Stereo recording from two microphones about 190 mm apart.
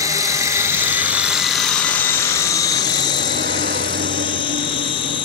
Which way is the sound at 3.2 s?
70° right (ahead or behind).